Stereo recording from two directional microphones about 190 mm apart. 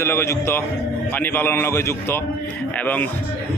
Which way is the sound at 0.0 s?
15° left (ahead or behind).